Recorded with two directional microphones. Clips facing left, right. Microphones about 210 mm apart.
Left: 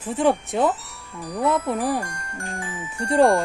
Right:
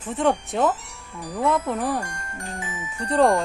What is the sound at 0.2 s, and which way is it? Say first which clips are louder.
A woman's voice: left 1 dB; centre (ahead or behind).